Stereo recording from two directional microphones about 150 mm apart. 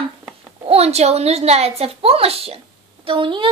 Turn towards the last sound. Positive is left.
turn(degrees=-35)  # may be behind; listen again after turning